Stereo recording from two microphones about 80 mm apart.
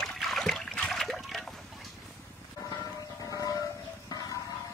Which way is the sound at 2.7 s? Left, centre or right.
Left.